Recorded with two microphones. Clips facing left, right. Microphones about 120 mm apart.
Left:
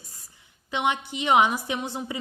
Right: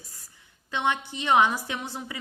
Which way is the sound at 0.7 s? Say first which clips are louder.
Left 1 dB; 15° left (ahead or behind).